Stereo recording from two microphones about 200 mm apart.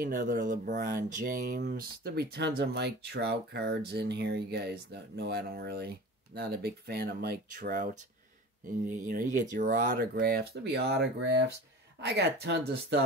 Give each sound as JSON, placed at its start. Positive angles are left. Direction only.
{"t": 0.0, "sound": "speech", "side_deg": -40}